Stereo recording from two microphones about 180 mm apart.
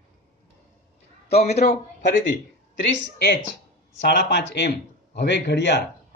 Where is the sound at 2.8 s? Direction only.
70° left (ahead or behind).